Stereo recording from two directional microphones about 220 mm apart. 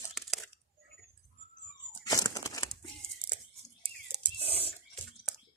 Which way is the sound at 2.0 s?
15° left (ahead or behind).